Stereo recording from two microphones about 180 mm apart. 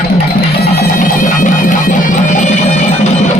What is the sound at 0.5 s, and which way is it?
Music, 60° left (ahead or behind).